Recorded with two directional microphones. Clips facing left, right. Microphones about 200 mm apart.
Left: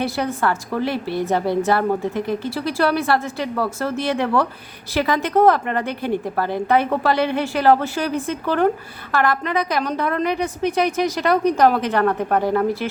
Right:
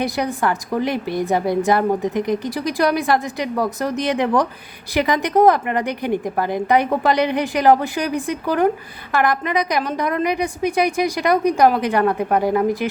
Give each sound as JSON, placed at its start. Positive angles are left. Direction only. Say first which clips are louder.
{"t": 0.0, "sound": "a woman's voice", "louder": "right 1 dB", "side_deg": -15}